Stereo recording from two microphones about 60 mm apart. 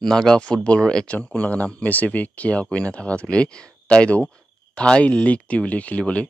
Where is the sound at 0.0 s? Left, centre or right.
Centre.